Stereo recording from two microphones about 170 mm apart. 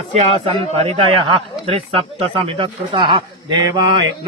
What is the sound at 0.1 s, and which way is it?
Speech, 40° right (ahead or behind).